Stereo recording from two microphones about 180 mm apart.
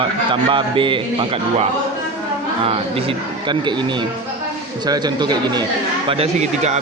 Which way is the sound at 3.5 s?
25° right (ahead or behind).